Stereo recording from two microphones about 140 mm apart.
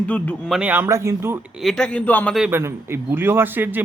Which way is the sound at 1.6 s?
Centre (ahead or behind).